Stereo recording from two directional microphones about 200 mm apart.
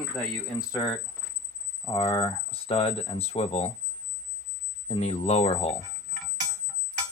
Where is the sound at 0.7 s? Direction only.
15° left (ahead or behind).